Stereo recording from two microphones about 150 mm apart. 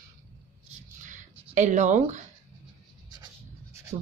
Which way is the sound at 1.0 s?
55° right (ahead or behind).